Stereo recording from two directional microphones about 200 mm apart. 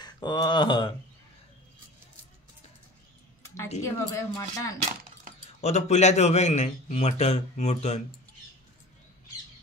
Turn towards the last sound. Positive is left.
turn(degrees=35)  # may be behind; listen again after turning